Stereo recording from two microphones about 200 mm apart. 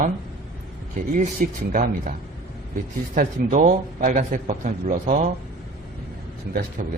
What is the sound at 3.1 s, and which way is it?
A man's voice, 40° right (ahead or behind).